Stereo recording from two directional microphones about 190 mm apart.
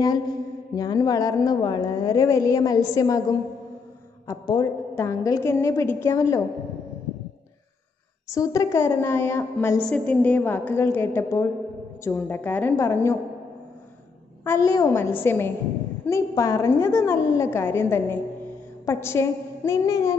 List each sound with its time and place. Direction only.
0.7 s a woman's voice: 20° left (ahead or behind)
8.3 s a woman's voice: 20° left (ahead or behind)
14.4 s a woman's voice: 15° left (ahead or behind)